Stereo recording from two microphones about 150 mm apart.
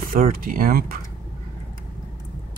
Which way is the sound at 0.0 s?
70° right (ahead or behind).